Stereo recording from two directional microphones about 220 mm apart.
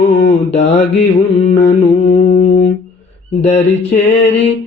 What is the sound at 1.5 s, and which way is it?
Mantra, 30° left (ahead or behind).